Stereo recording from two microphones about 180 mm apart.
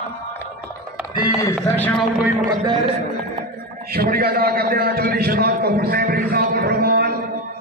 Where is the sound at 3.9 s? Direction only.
55° right (ahead or behind).